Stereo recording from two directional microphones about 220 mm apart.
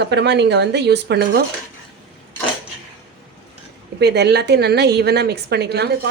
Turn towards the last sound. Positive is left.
turn(degrees=-50)  # may be behind; listen again after turning